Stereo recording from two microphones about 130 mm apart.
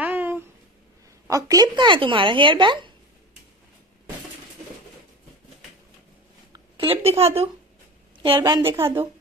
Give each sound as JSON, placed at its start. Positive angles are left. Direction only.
{"t": 0.0, "sound": "a sound", "side_deg": -15}
{"t": 1.2, "sound": "speech", "side_deg": -25}
{"t": 6.9, "sound": "a woman's voice", "side_deg": -50}
{"t": 8.2, "sound": "a woman's voice", "side_deg": -35}
{"t": 8.6, "sound": "a woman's voice", "side_deg": -20}